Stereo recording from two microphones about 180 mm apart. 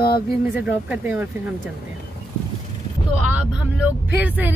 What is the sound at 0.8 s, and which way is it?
Speech, 10° right (ahead or behind).